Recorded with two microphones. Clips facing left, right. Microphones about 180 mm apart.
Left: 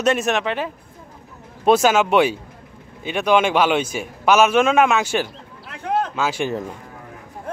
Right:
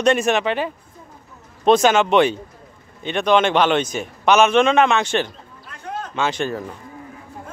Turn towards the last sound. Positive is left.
turn(degrees=5)  # may be behind; listen again after turning